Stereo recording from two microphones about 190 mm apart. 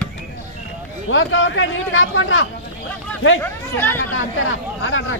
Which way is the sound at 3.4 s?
10° left (ahead or behind).